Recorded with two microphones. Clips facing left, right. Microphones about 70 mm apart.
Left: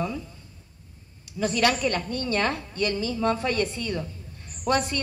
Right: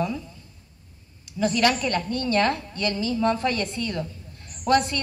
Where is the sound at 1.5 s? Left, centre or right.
Centre.